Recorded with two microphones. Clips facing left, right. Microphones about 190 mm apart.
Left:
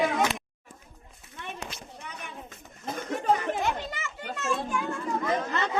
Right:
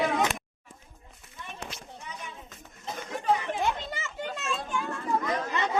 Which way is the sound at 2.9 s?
45° left (ahead or behind).